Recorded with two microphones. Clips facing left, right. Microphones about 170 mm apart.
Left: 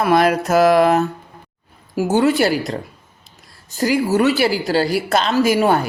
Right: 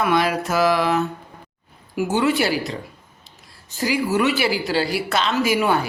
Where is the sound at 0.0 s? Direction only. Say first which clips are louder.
Left 5 dB; 45° left (ahead or behind).